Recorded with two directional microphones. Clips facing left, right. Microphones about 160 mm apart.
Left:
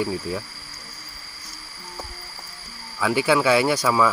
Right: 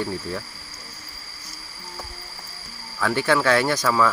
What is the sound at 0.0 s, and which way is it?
Cricket, 10° left (ahead or behind).